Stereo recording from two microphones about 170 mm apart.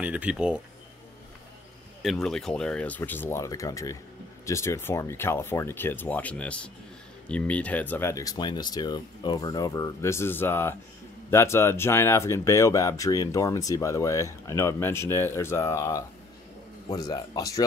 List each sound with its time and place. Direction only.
0.0 s speech: 10° right (ahead or behind)
2.0 s speech: centre (ahead or behind); by 17.6 s 20° left (ahead or behind)